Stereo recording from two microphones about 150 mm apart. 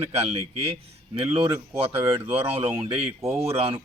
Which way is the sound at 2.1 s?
40° right (ahead or behind).